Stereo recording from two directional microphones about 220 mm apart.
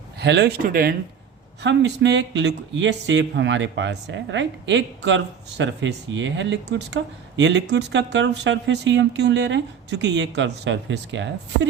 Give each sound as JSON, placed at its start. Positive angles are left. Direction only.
{"t": 0.2, "sound": "speech", "side_deg": -50}
{"t": 1.6, "sound": "speech", "side_deg": -55}